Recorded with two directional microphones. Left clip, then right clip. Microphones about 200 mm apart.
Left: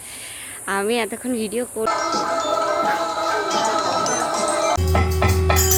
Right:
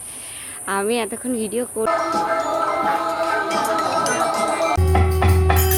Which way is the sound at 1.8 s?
45° right (ahead or behind).